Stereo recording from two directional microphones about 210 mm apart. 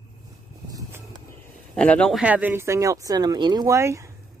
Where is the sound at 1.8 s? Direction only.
5° left (ahead or behind); by 4.1 s 15° right (ahead or behind).